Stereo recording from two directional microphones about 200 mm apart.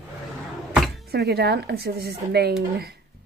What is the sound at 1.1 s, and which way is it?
Speech, 55° right (ahead or behind).